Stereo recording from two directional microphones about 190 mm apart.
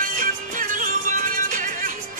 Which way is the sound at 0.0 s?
45° right (ahead or behind).